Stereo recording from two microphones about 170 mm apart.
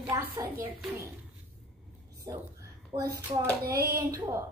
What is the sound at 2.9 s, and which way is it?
Speech, 20° right (ahead or behind).